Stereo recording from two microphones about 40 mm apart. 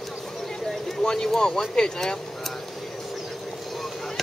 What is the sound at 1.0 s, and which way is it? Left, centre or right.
Speech, centre.